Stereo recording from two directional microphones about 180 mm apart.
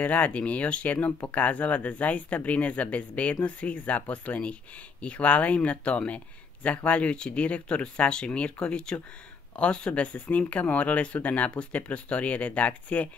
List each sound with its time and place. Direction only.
0.0 s speech: 10° left (ahead or behind)